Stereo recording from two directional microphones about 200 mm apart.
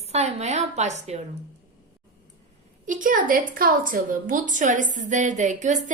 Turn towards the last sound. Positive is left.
turn(degrees=-35)  # may be behind; listen again after turning